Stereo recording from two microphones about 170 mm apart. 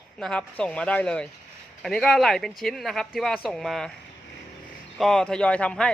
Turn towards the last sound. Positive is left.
turn(degrees=5)  # may be behind; listen again after turning